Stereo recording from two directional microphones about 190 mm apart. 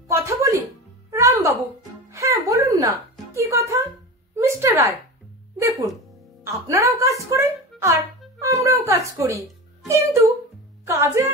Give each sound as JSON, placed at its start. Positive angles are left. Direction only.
{"t": 0.1, "sound": "music", "side_deg": -15}
{"t": 4.5, "sound": "a sound", "side_deg": -15}
{"t": 5.6, "sound": "music", "side_deg": -15}
{"t": 6.4, "sound": "a woman's voice", "side_deg": -15}